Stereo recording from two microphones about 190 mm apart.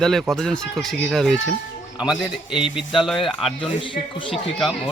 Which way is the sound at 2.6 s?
5° right (ahead or behind).